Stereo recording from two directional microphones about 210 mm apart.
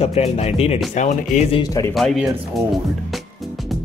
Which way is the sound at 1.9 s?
Centre (ahead or behind).